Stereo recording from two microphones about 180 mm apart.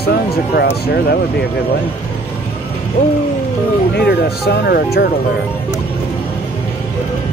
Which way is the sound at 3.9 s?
65° left (ahead or behind).